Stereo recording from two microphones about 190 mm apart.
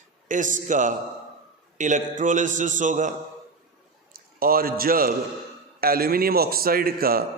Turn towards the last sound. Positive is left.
turn(degrees=-50)  # may be behind; listen again after turning